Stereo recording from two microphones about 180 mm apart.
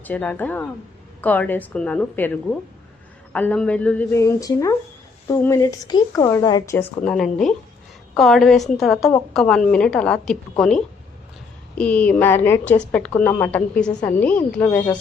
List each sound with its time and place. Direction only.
0.0 s a woman's voice: 10° left (ahead or behind)
6.7 s a woman's voice: 5° left (ahead or behind)